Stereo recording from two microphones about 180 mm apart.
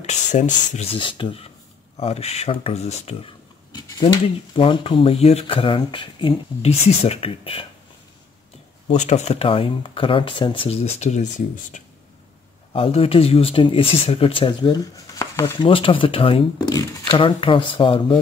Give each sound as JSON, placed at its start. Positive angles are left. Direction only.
{"t": 0.0, "sound": "speech", "side_deg": 40}
{"t": 3.7, "sound": "speech", "side_deg": 25}
{"t": 8.8, "sound": "speech", "side_deg": 40}
{"t": 12.7, "sound": "speech", "side_deg": 30}
{"t": 15.6, "sound": "speech", "side_deg": 30}